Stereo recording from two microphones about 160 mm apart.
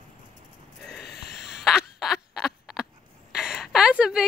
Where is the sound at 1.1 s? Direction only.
80° left.